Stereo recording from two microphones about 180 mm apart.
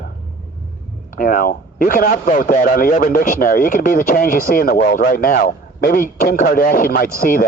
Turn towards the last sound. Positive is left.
turn(degrees=55)  # may be behind; listen again after turning